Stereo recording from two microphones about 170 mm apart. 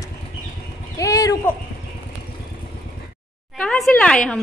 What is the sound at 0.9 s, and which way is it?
Speech, 20° left (ahead or behind).